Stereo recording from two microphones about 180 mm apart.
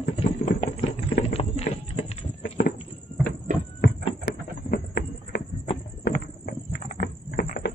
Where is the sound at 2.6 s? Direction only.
70° left (ahead or behind).